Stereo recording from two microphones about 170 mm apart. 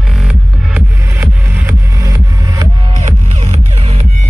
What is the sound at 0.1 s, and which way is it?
Music, 5° right (ahead or behind).